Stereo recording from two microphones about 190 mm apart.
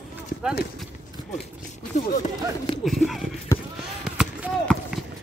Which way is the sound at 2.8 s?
Centre (ahead or behind).